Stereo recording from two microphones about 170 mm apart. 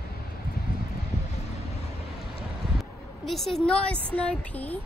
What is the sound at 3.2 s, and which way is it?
A woman's voice, centre (ahead or behind).